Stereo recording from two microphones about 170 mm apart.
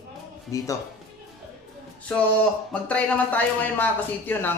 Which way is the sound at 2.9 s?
10° left (ahead or behind).